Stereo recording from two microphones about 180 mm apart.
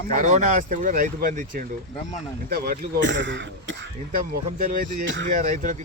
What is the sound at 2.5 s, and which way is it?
Speech, 55° right (ahead or behind).